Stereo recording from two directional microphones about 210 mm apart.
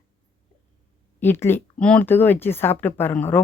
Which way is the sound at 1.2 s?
10° left (ahead or behind).